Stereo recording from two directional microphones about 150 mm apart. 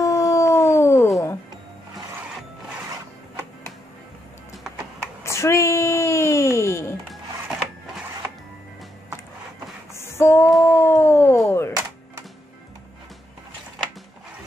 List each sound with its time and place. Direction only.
0.0 s howl: 20° left (ahead or behind)
5.2 s music: 20° left (ahead or behind)
9.9 s female singing: 15° left (ahead or behind)
10.6 s a sound: 20° left (ahead or behind)